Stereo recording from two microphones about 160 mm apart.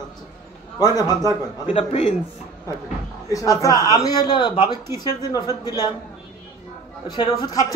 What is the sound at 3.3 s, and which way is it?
Speech, 20° left (ahead or behind).